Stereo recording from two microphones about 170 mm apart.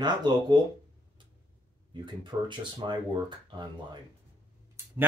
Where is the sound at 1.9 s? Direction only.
30° right (ahead or behind).